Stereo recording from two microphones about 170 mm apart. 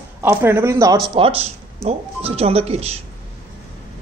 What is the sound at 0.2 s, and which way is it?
Speech, 15° right (ahead or behind).